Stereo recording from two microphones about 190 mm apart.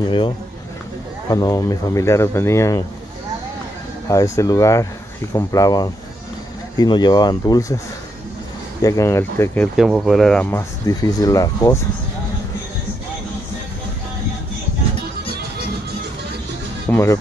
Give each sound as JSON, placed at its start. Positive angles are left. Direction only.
{"t": 1.3, "sound": "speech", "side_deg": 20}
{"t": 4.1, "sound": "speech", "side_deg": 15}
{"t": 8.8, "sound": "speech", "side_deg": 15}
{"t": 9.8, "sound": "speech", "side_deg": 0}
{"t": 16.9, "sound": "speech", "side_deg": 15}